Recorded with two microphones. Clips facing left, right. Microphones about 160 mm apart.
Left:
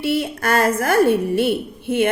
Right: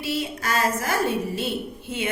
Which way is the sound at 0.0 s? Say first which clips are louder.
Left 7 dB; 60° left (ahead or behind).